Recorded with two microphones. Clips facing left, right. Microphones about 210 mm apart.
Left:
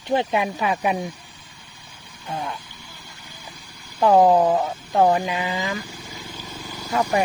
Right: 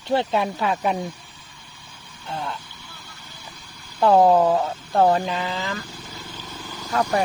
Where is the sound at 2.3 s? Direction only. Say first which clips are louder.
Left 1 dB; 15° left (ahead or behind).